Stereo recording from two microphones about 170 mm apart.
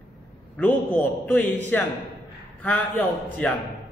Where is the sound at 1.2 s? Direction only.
10° left (ahead or behind).